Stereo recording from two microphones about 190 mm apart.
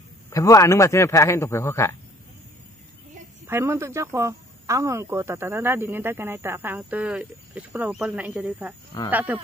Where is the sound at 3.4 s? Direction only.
15° right (ahead or behind).